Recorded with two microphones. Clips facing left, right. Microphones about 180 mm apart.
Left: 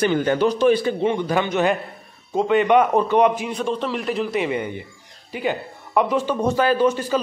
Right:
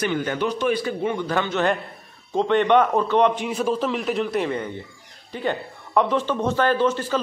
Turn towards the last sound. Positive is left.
turn(degrees=15)  # may be behind; listen again after turning